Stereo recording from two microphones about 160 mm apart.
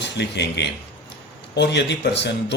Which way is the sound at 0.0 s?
90° left.